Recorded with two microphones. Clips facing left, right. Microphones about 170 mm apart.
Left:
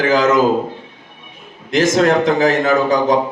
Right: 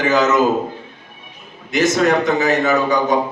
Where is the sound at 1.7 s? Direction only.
90° left.